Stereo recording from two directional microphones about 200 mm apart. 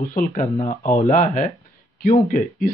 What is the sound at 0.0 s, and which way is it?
Speech, 45° left (ahead or behind).